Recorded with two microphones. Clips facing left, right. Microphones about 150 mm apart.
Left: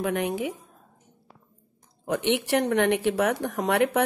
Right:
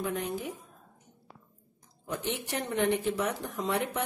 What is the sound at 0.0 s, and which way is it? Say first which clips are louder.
Speech: left 6 dB; 75° left (ahead or behind).